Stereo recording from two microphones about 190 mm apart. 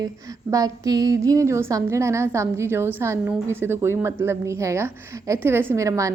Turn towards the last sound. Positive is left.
turn(degrees=-15)  # may be behind; listen again after turning